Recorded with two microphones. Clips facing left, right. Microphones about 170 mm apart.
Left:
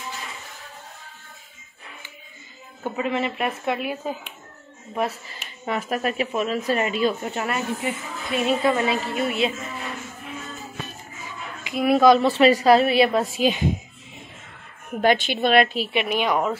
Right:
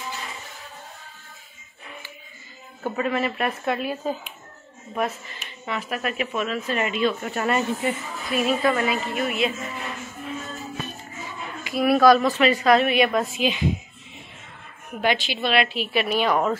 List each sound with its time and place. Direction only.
2.8 s speech: 15° left (ahead or behind)
4.9 s speech: 35° left (ahead or behind)
7.4 s speech: 5° left (ahead or behind)
8.3 s a woman's voice: 25° left (ahead or behind)
11.6 s speech: 20° left (ahead or behind)
13.4 s a woman's voice: 45° left (ahead or behind)
14.9 s a woman's voice: 45° left (ahead or behind)
15.9 s speech: 15° left (ahead or behind)